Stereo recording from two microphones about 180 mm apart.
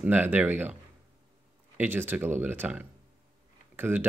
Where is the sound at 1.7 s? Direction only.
10° right (ahead or behind).